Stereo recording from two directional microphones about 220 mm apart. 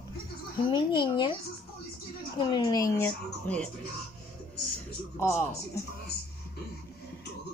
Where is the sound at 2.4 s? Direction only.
20° left (ahead or behind).